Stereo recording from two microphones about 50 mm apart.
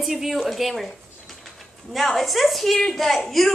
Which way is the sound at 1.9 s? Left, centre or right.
Centre.